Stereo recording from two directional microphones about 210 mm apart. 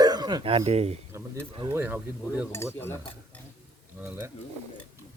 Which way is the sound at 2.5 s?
10° left (ahead or behind).